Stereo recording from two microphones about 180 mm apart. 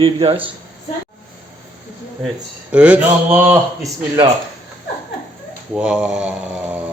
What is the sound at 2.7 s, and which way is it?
Speech, 5° right (ahead or behind).